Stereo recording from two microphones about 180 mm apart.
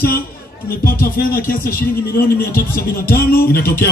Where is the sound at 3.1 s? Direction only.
55° left (ahead or behind).